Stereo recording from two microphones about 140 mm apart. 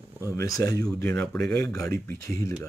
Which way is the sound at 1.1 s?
5° left (ahead or behind).